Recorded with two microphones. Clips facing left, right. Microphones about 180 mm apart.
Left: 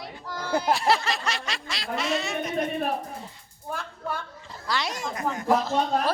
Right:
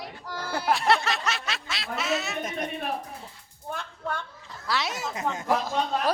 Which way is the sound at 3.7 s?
5° left (ahead or behind).